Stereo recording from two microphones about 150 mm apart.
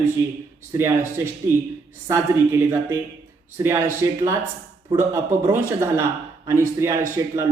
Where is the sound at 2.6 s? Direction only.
20° right (ahead or behind).